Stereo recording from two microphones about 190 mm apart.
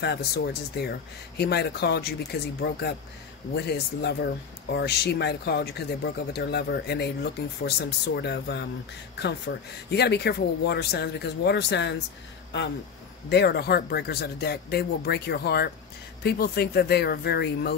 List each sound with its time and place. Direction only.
0.0 s speech: 60° left (ahead or behind)